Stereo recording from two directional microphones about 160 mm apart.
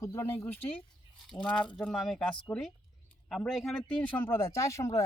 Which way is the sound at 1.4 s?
5° left (ahead or behind).